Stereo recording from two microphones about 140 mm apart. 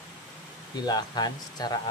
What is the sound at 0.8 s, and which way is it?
Speech, 30° left (ahead or behind).